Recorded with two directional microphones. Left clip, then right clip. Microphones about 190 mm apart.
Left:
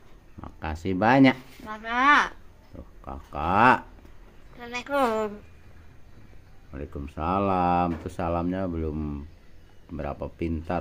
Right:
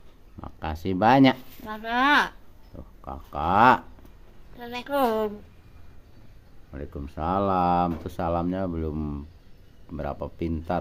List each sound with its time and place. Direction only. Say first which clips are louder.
0.4 s a sound: right 1 dB; 5° right (ahead or behind)
1.8 s speech: left 1 dB; 40° right (ahead or behind)
2.7 s speech: right 1 dB; centre (ahead or behind)
4.6 s speech: left 1 dB; 30° right (ahead or behind)
5.0 s a woman's voice: right 2 dB; 20° right (ahead or behind)
6.7 s speech: even; centre (ahead or behind)